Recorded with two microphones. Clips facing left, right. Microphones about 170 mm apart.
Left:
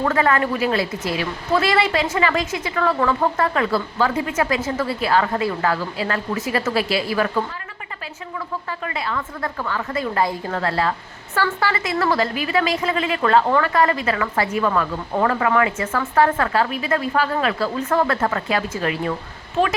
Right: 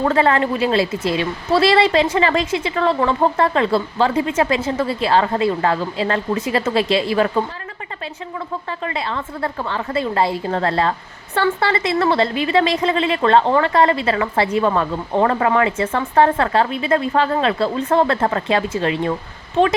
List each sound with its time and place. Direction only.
0.0 s a woman's voice: 30° right (ahead or behind)
8.8 s a woman's voice: 30° right (ahead or behind)